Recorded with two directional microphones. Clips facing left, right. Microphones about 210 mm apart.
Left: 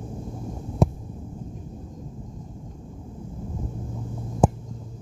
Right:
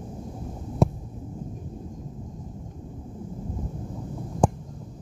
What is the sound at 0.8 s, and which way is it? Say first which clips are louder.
Heart sounds: even; centre (ahead or behind).